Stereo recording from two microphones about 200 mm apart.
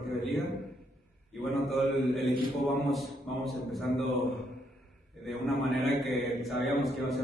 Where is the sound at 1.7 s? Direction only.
Centre (ahead or behind).